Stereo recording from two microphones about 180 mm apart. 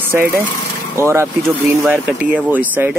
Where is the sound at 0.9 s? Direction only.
15° right (ahead or behind).